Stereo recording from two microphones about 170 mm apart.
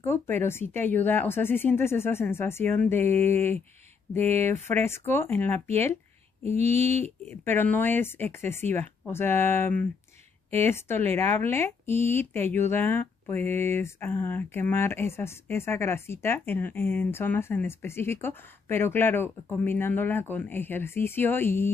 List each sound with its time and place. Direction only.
0.0 s speech: 15° left (ahead or behind)
4.6 s speech: 15° left (ahead or behind)
6.4 s a sound: 40° right (ahead or behind)
7.2 s speech: 10° left (ahead or behind)